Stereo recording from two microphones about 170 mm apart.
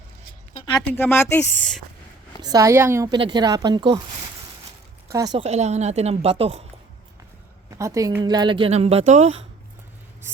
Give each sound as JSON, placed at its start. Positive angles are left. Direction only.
{"t": 0.8, "sound": "speech", "side_deg": 10}
{"t": 2.4, "sound": "a woman's voice", "side_deg": -20}
{"t": 5.0, "sound": "speech", "side_deg": -20}
{"t": 5.4, "sound": "speech", "side_deg": -40}
{"t": 7.8, "sound": "speech", "side_deg": -20}